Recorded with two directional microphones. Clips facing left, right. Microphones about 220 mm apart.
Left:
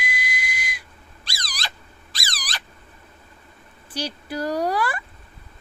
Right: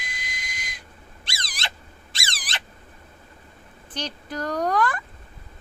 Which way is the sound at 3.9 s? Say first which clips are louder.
Left 3 dB; 10° left (ahead or behind).